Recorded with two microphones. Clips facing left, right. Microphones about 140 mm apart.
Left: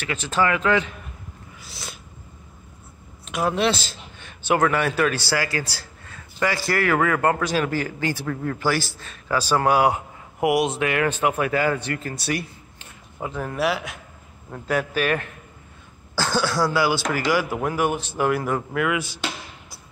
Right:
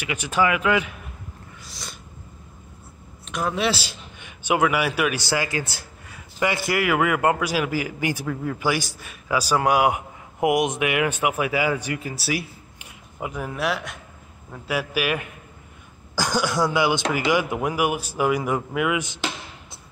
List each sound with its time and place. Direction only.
0.0 s speech: 15° right (ahead or behind)
1.6 s cat: 5° left (ahead or behind)
3.3 s a man's voice: 5° left (ahead or behind)
13.6 s speech: centre (ahead or behind); by 19.1 s 15° right (ahead or behind)